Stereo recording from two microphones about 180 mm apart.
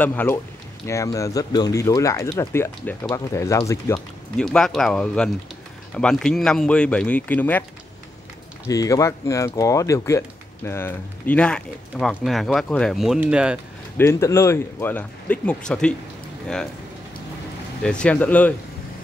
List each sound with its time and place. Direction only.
0.0 s speech: 10° left (ahead or behind)
4.4 s speech: 5° left (ahead or behind)
8.6 s speech: 20° left (ahead or behind); by 13.6 s 5° right (ahead or behind)
13.9 s speech: 15° left (ahead or behind)
17.8 s speech: 5° left (ahead or behind)